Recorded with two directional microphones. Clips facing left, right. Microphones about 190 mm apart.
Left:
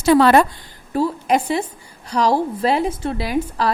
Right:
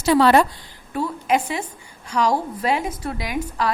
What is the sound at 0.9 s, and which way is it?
A woman's voice, 35° left (ahead or behind).